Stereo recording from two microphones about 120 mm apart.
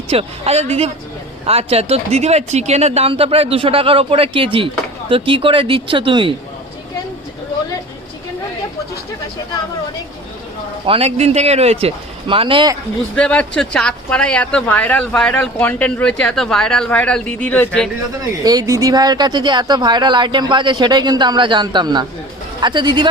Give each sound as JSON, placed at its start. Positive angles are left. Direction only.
{"t": 0.1, "sound": "speech", "side_deg": -55}
{"t": 3.1, "sound": "speech", "side_deg": -50}
{"t": 10.8, "sound": "speech", "side_deg": -55}
{"t": 13.1, "sound": "speech", "side_deg": 10}
{"t": 18.4, "sound": "speech", "side_deg": -30}